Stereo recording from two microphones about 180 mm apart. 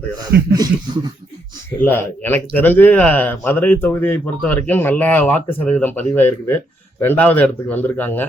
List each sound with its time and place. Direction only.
0.3 s speech: 65° right (ahead or behind)
1.8 s speech: 10° left (ahead or behind)